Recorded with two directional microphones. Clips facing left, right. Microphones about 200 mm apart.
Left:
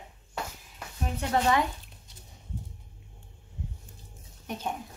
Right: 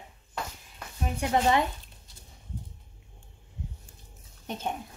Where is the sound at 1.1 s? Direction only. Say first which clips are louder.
Right 1 dB; 20° right (ahead or behind).